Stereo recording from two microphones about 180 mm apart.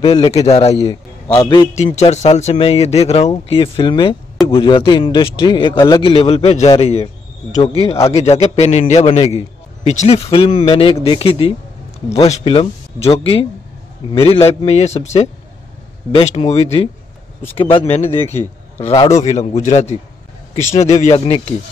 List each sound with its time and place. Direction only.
0.0 s speech: 35° left (ahead or behind)
1.4 s a man's voice: 25° left (ahead or behind)
1.8 s a man's voice: 35° left (ahead or behind)
19.0 s speech: 40° left (ahead or behind)